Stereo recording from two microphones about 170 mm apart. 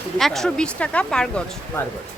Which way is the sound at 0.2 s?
Centre (ahead or behind).